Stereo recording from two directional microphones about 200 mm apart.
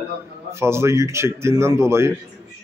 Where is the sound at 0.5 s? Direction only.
10° right (ahead or behind).